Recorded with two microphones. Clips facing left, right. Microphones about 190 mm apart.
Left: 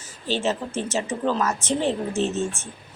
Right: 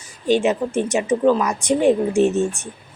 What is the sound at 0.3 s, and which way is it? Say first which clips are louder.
A woman's voice: right 7 dB; 15° right (ahead or behind).